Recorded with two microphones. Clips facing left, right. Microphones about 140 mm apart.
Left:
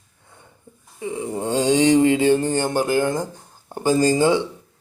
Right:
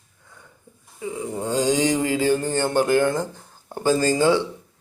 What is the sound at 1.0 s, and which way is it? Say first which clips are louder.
Mantra: left 2 dB; 25° left (ahead or behind).